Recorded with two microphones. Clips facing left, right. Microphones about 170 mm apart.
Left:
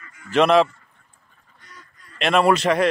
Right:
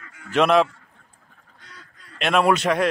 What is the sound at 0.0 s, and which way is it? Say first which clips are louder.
Goose: right 1 dB; 80° right.